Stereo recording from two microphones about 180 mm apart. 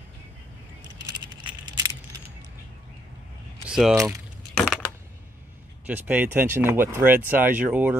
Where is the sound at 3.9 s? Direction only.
15° right (ahead or behind).